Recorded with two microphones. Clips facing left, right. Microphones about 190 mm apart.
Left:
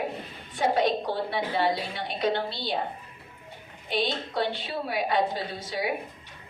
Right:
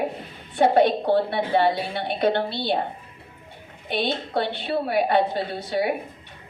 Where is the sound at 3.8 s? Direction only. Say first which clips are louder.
Right 3 dB; 60° right (ahead or behind).